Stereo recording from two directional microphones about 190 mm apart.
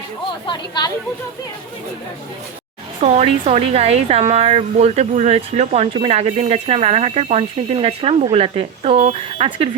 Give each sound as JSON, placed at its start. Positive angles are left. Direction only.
{"t": 0.4, "sound": "speech", "side_deg": 25}
{"t": 3.0, "sound": "speech", "side_deg": -35}